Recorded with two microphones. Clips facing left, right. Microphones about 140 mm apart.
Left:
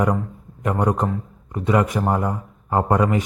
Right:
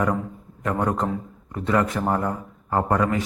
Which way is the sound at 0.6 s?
20° left (ahead or behind).